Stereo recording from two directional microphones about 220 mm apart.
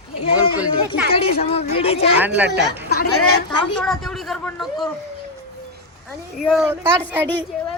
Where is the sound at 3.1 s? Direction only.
85° left.